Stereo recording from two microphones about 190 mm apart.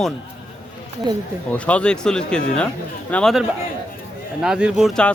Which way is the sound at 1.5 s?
5° left (ahead or behind).